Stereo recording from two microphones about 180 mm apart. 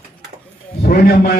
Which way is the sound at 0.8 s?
60° left (ahead or behind).